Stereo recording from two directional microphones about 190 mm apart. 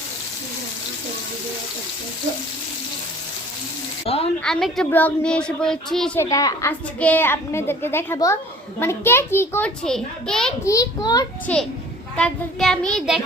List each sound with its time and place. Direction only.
4.0 s speech: 30° left (ahead or behind)
4.4 s speech: 5° left (ahead or behind)
6.1 s a woman's voice: 15° left (ahead or behind)
10.6 s a child's voice: 15° left (ahead or behind)
11.5 s a woman's voice: 10° left (ahead or behind)